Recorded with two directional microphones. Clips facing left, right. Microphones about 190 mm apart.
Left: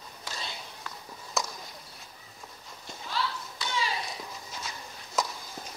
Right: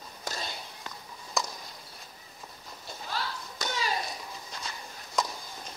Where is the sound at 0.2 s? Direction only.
45° right (ahead or behind).